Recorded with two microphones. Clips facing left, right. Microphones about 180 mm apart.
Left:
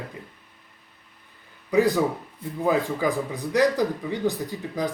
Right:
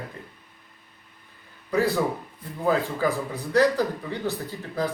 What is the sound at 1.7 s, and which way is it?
A man's voice, 15° left (ahead or behind).